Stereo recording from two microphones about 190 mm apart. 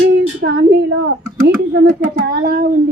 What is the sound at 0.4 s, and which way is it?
A woman's voice, 65° right (ahead or behind).